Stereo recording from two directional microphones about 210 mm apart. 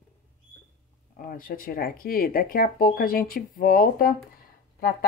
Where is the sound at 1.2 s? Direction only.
45° left (ahead or behind).